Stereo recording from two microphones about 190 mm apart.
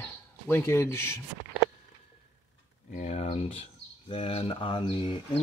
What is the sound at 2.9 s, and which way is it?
Speech, 35° left (ahead or behind).